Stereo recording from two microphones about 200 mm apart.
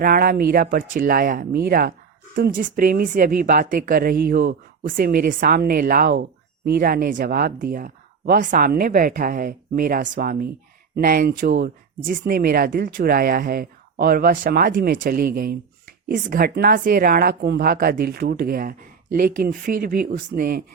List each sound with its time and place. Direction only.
0.0 s speech: 45° right (ahead or behind)